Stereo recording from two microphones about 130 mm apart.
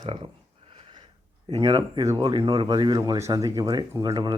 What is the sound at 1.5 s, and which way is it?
Speech, 40° right (ahead or behind).